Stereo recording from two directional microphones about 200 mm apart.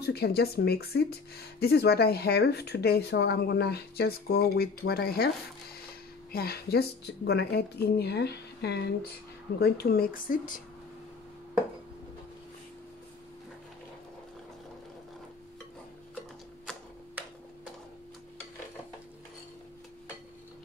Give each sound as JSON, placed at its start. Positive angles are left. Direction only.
{"t": 0.0, "sound": "speech", "side_deg": 50}